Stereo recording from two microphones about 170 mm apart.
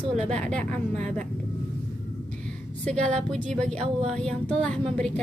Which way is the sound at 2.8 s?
5° left (ahead or behind).